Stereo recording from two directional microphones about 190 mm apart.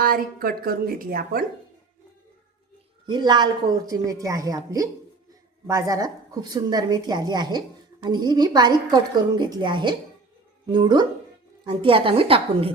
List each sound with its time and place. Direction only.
0.0 s a woman's voice: 50° right (ahead or behind)
3.1 s a woman's voice: 25° right (ahead or behind)